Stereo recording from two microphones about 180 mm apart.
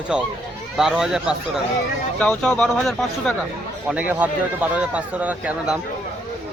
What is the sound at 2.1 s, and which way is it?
Speech, 5° left (ahead or behind).